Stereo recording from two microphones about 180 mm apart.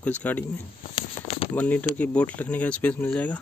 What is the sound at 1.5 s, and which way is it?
Speech, 10° left (ahead or behind).